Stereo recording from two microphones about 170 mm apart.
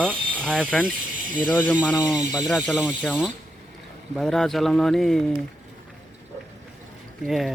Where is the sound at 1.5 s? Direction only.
10° left (ahead or behind).